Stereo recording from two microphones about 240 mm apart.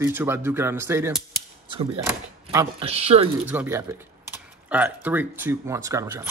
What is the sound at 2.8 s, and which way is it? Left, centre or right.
Speech, right.